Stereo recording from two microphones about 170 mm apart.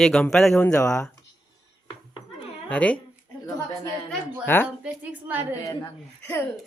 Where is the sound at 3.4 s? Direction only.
20° left (ahead or behind).